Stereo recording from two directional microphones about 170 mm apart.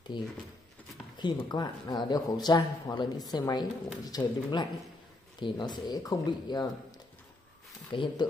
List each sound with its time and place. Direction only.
0.1 s speech: 25° left (ahead or behind)
7.9 s speech: 30° left (ahead or behind)